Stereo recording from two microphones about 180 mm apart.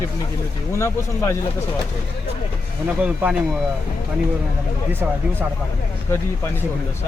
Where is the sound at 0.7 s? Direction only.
15° left (ahead or behind).